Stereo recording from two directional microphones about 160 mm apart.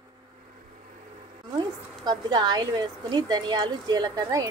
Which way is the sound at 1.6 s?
25° right (ahead or behind).